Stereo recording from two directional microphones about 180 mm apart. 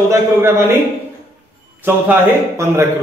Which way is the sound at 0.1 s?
15° right (ahead or behind).